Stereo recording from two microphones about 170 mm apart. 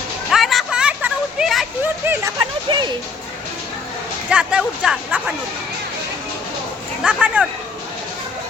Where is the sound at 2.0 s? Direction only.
15° right (ahead or behind).